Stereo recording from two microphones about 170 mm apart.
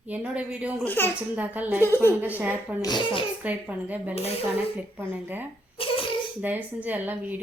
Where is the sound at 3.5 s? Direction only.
10° right (ahead or behind).